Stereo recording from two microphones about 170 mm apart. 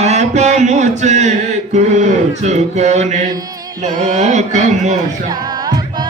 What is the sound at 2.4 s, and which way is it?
Music, 40° right (ahead or behind).